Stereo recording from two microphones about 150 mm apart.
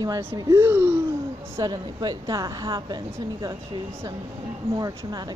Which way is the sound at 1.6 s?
25° right (ahead or behind).